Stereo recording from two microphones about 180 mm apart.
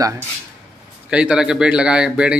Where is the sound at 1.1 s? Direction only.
5° right (ahead or behind).